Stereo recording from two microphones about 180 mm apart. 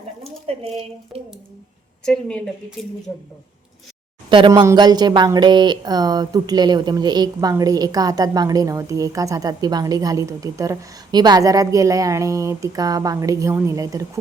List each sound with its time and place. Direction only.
0.5 s speech: 35° right (ahead or behind)
1.1 s speech: 10° right (ahead or behind)
2.0 s a woman's voice: 5° left (ahead or behind)
4.3 s speech: 25° right (ahead or behind)